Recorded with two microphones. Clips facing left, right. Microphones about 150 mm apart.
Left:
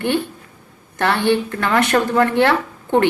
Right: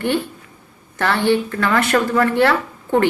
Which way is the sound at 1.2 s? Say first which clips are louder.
Right 1 dB; 20° left (ahead or behind).